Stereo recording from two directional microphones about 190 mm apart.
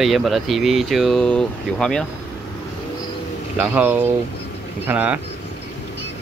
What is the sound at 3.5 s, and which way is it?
Speech, 10° right (ahead or behind).